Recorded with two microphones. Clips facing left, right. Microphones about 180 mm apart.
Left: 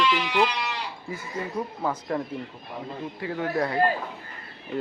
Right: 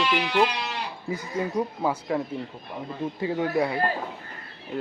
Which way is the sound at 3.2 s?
20° right (ahead or behind).